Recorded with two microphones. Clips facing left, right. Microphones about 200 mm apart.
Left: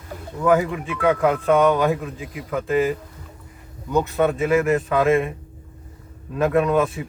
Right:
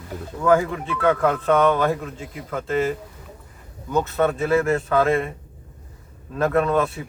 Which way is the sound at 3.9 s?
15° left (ahead or behind).